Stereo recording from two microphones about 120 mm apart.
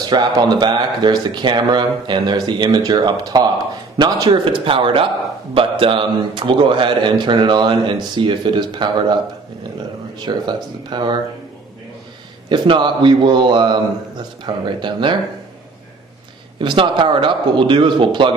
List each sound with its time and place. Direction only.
0.0 s a man's voice: 35° right (ahead or behind)
10.2 s speech: 40° right (ahead or behind)
12.4 s speech: 40° right (ahead or behind)
16.5 s a man's voice: 40° right (ahead or behind)